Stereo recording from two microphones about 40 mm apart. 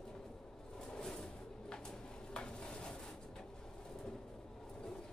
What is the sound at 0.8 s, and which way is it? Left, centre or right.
Pigeon, centre.